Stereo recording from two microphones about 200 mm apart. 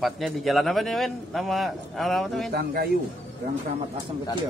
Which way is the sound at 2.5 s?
50° right (ahead or behind).